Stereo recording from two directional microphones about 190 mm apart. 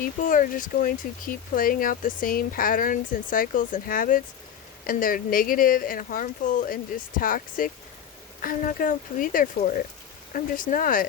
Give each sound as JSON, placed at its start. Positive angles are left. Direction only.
{"t": 0.0, "sound": "speech", "side_deg": 45}